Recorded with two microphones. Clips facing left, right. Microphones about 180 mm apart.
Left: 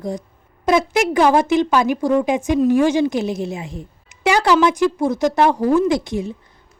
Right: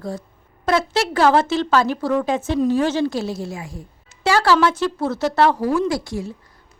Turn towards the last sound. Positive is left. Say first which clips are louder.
# left 4 dB
turn(degrees=20)  # may be behind; listen again after turning